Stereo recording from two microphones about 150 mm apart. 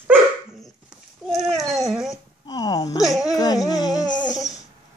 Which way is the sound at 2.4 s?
25° left (ahead or behind).